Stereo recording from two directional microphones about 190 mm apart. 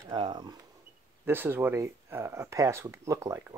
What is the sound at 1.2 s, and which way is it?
Speech, 10° right (ahead or behind).